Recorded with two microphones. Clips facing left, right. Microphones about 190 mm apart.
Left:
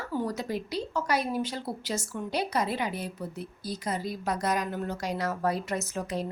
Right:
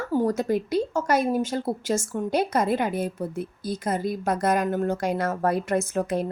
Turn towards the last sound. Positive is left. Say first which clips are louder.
# right 7 dB
turn(degrees=-55)  # may be behind; listen again after turning